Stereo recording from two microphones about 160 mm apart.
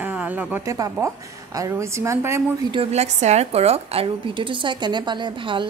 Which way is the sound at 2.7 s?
40° right (ahead or behind).